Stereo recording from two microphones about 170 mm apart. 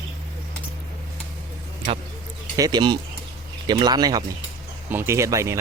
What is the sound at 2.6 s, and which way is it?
Speech, 25° right (ahead or behind).